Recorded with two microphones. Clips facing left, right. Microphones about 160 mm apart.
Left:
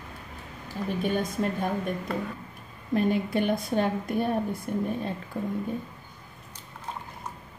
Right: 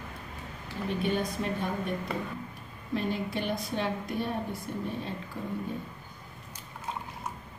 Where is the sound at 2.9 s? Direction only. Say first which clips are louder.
Left 6 dB; 50° left (ahead or behind).